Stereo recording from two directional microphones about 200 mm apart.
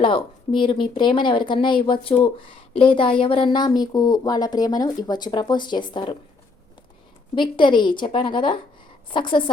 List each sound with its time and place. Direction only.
0.0 s a woman's voice: 25° left (ahead or behind)
7.3 s a woman's voice: 25° left (ahead or behind)